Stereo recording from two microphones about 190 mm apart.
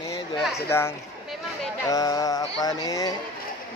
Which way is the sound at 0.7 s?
15° left (ahead or behind).